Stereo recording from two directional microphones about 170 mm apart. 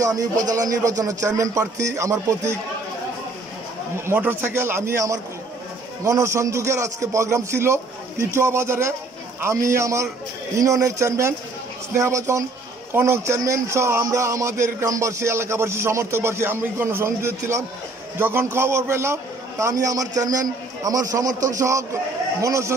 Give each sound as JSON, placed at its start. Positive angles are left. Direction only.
{"t": 0.1, "sound": "speech", "side_deg": -20}
{"t": 4.0, "sound": "a man's voice", "side_deg": -15}